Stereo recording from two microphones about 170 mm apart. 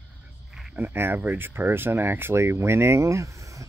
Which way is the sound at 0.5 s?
5° right (ahead or behind).